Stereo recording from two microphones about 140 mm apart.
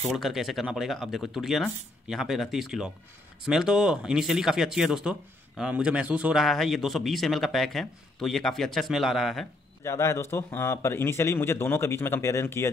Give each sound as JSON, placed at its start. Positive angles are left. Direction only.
{"t": 0.1, "sound": "a man's voice", "side_deg": 0}
{"t": 9.8, "sound": "speech", "side_deg": 20}